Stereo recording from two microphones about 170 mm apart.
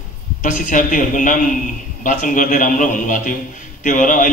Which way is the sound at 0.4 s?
50° left (ahead or behind).